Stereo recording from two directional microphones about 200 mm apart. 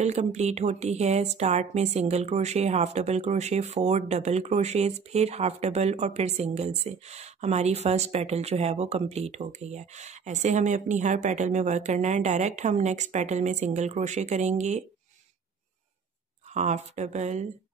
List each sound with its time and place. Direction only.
0.0 s speech: 35° right (ahead or behind)
16.5 s speech: 35° right (ahead or behind)